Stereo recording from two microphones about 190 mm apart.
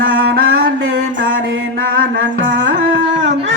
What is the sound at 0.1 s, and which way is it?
Mantra, 90° right.